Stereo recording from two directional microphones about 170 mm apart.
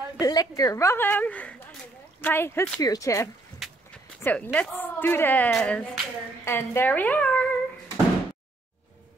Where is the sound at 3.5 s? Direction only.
Centre (ahead or behind).